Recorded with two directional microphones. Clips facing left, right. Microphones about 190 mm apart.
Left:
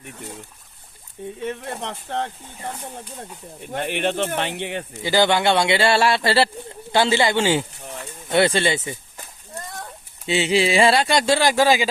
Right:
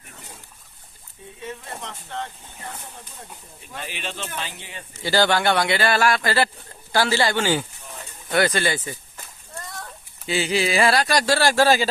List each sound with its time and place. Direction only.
1.4 s speech: 65° left (ahead or behind)
3.6 s speech: 60° left (ahead or behind)
5.0 s speech: 20° left (ahead or behind)
10.2 s speech: 25° left (ahead or behind)